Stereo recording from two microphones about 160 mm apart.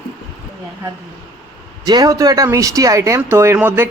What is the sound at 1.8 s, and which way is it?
Speech, 25° right (ahead or behind).